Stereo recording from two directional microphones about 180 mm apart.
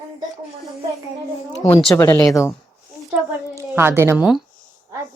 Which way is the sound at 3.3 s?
15° right (ahead or behind).